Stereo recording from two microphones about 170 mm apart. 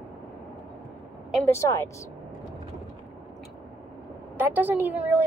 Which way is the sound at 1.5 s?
15° left (ahead or behind).